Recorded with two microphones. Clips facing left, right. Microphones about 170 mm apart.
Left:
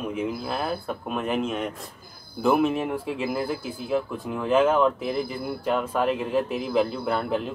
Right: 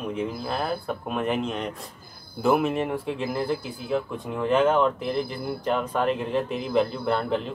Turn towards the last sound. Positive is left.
turn(degrees=5)  # may be behind; listen again after turning